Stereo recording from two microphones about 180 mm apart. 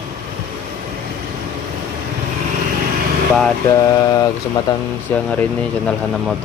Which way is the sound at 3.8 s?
20° left (ahead or behind).